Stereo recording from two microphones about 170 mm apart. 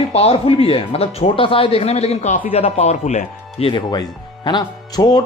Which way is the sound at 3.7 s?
25° left (ahead or behind).